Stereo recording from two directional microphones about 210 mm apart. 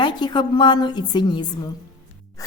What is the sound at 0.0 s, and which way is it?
A woman's voice, 20° left (ahead or behind).